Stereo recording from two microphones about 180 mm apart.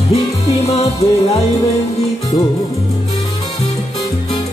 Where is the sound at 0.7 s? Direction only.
35° left (ahead or behind).